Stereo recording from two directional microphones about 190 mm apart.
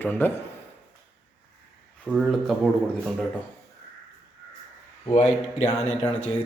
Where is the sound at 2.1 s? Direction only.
Centre (ahead or behind).